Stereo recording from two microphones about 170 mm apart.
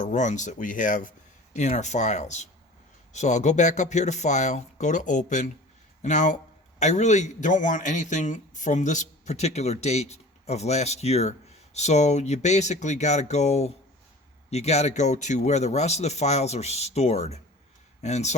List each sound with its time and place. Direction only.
0.0 s a man's voice: 45° left (ahead or behind)